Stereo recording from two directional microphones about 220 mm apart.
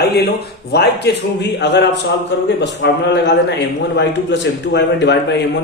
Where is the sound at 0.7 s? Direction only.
50° left (ahead or behind).